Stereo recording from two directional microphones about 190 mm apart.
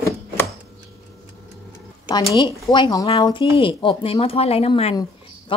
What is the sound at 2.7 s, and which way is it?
Speech, 20° left (ahead or behind).